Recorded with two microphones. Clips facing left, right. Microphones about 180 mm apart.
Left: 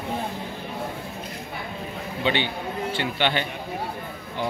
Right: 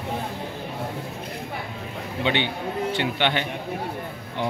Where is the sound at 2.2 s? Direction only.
20° right (ahead or behind).